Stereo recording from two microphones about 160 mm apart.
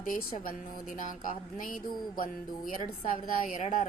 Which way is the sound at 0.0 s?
55° left (ahead or behind).